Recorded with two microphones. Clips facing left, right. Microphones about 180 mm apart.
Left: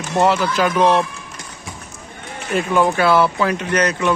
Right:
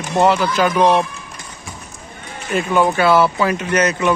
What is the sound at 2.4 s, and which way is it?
Speech, centre (ahead or behind).